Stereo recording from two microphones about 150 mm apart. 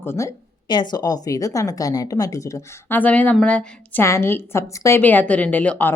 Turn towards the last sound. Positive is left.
turn(degrees=10)  # may be behind; listen again after turning